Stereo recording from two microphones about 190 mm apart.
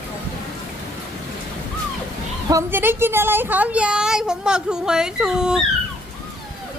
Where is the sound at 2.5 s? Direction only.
15° right (ahead or behind).